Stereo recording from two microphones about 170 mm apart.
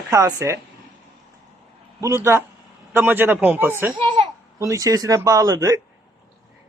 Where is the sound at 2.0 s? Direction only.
15° right (ahead or behind).